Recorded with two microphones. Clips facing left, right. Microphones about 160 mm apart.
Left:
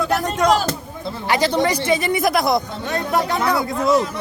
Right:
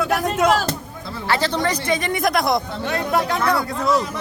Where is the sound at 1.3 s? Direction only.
15° left (ahead or behind).